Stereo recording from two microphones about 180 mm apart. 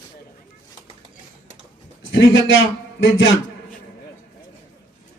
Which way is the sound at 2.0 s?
90° left.